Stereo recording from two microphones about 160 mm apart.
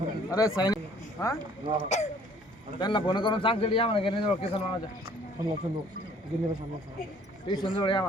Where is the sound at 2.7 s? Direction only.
30° left (ahead or behind).